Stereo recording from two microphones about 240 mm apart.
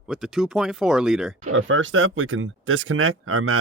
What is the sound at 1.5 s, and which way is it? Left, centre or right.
Speech, right.